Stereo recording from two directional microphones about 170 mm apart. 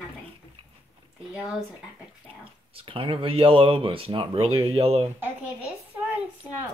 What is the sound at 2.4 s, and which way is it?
Speech, 30° right (ahead or behind).